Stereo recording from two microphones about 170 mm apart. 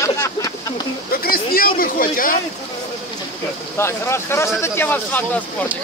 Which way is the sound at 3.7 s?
15° left (ahead or behind).